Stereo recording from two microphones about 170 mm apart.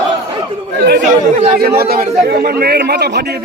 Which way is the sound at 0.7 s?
75° right (ahead or behind).